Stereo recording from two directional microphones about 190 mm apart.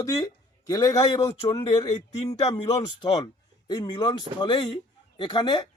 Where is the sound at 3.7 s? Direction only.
25° left (ahead or behind).